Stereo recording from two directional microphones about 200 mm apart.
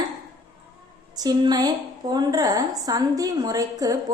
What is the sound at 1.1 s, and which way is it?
A woman's voice, 20° right (ahead or behind).